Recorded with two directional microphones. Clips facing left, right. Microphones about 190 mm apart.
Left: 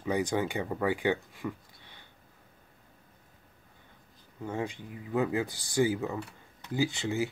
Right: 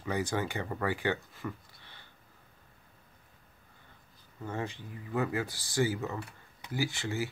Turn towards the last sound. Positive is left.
turn(degrees=20)  # may be behind; listen again after turning